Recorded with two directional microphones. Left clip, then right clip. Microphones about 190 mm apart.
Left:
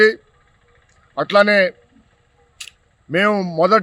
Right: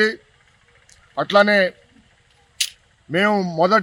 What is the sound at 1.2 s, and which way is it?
Speech, 20° left (ahead or behind).